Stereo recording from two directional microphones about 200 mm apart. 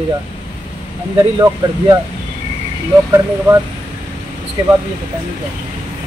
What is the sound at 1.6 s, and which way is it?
Speech, 15° right (ahead or behind).